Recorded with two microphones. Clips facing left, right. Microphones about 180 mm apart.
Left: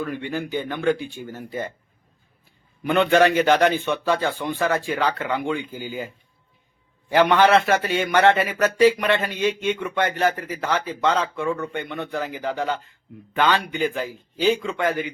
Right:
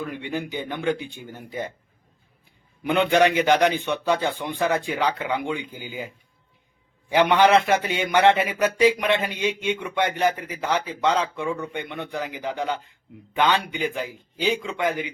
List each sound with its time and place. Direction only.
0.0 s a man's voice: 15° right (ahead or behind)
2.8 s a man's voice: 15° right (ahead or behind)
7.1 s a man's voice: 15° right (ahead or behind)